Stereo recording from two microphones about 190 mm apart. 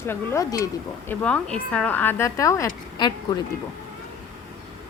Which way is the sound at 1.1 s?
5° left (ahead or behind).